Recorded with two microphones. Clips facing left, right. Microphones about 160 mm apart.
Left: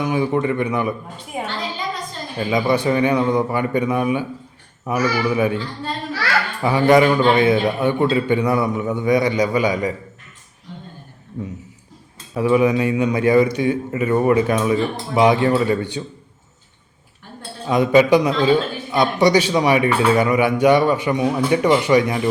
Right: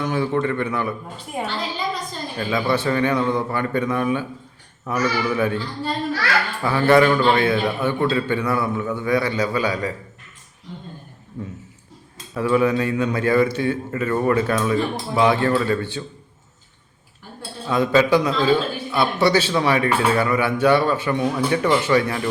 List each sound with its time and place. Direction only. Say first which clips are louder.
0.0 s a man's voice: left 2 dB; 15° left (ahead or behind)
2.4 s a man's voice: left 3 dB; 15° left (ahead or behind)
12.3 s a man's voice: left 3 dB; 15° left (ahead or behind)
17.7 s a man's voice: left 3 dB; 15° left (ahead or behind)